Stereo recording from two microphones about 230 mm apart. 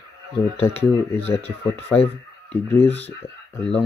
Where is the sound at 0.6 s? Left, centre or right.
Left.